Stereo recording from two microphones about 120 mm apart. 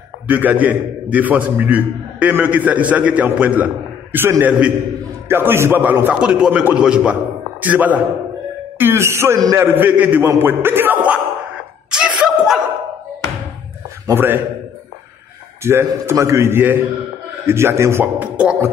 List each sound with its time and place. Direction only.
0.3 s a man's voice: 15° right (ahead or behind)
10.3 s a sound: 20° right (ahead or behind)
14.0 s a man's voice: 20° right (ahead or behind)
15.6 s a man's voice: 20° right (ahead or behind)
18.3 s music: 10° right (ahead or behind)